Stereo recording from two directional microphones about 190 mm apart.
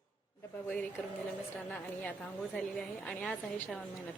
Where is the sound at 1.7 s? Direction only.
5° left (ahead or behind).